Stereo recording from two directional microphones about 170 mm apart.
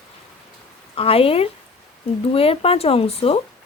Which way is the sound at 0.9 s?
35° left (ahead or behind).